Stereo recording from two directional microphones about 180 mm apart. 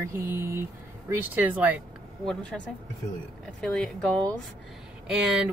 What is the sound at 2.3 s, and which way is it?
A woman's voice, 5° left (ahead or behind).